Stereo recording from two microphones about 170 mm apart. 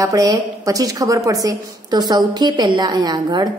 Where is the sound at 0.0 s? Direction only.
20° right (ahead or behind).